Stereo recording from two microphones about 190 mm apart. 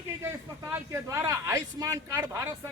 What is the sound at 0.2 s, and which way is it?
Speech, 15° right (ahead or behind).